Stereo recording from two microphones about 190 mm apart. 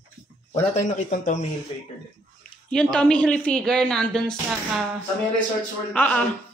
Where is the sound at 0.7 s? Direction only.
40° left (ahead or behind).